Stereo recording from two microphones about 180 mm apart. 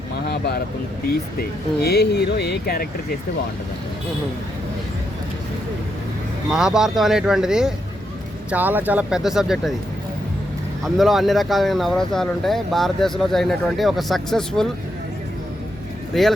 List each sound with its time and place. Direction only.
0.3 s a sound: 65° left (ahead or behind)
1.0 s speech: 60° left (ahead or behind)
6.5 s speech: 5° right (ahead or behind)
10.8 s speech: centre (ahead or behind)
16.1 s speech: centre (ahead or behind)